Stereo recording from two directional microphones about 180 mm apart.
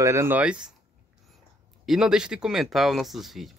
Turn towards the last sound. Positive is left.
turn(degrees=0)  # may be behind; listen again after turning